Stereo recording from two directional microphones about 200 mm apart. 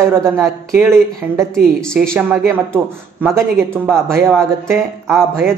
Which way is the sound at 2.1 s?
10° right (ahead or behind).